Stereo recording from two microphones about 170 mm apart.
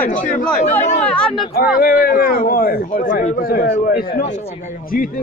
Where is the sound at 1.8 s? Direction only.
60° left (ahead or behind).